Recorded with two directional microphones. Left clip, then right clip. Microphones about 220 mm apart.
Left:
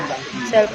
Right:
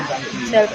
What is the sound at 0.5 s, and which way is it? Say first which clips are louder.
Speech: even; 10° left (ahead or behind).